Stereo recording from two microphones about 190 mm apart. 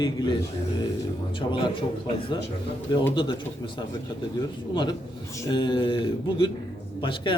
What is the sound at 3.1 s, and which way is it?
Speech, 25° left (ahead or behind).